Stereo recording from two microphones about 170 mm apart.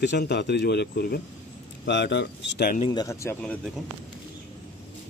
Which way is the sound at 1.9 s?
90° left.